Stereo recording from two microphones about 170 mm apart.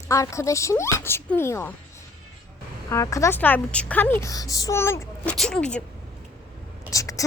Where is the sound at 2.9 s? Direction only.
20° left (ahead or behind).